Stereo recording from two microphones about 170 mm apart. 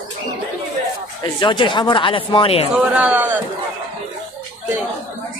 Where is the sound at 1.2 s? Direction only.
30° left (ahead or behind).